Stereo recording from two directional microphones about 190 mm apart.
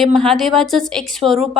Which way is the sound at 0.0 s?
Centre (ahead or behind).